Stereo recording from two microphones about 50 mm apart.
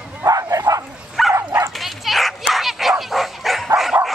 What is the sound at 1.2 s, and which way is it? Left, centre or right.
Dog, centre.